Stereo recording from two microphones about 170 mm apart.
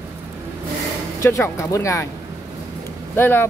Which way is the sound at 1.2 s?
15° left (ahead or behind).